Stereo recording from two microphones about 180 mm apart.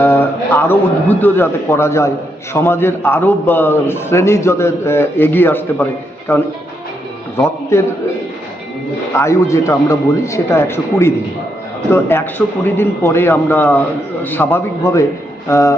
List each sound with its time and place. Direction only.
0.0 s a man's voice: 10° left (ahead or behind)
9.1 s a man's voice: 15° left (ahead or behind)